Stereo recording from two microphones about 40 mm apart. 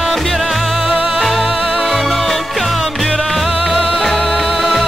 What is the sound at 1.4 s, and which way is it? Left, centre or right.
Music, centre.